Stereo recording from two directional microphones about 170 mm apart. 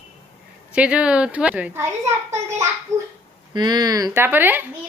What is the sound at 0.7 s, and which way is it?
A child's voice, 5° right (ahead or behind).